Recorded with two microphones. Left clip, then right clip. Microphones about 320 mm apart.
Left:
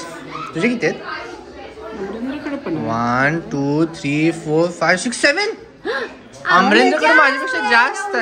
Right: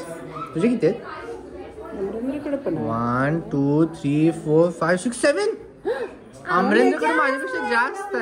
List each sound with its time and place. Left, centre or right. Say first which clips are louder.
0.6 s speech: left 2 dB; centre
3.0 s speech: left 9 dB; centre
5.9 s a sound: left 3 dB; left
6.5 s speech: left 6 dB; centre